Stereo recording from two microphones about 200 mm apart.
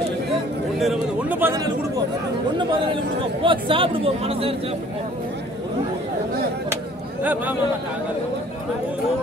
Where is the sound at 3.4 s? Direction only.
25° right (ahead or behind).